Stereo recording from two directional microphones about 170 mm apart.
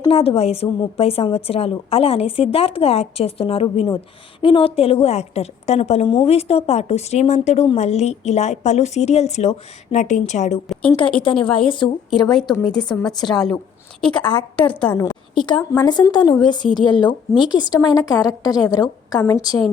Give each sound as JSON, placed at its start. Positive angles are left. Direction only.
{"t": 0.1, "sound": "a woman's voice", "side_deg": 35}
{"t": 10.9, "sound": "a woman's voice", "side_deg": 30}
{"t": 12.1, "sound": "a woman's voice", "side_deg": 0}